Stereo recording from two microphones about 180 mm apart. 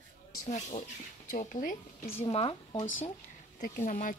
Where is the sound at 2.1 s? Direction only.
35° left (ahead or behind).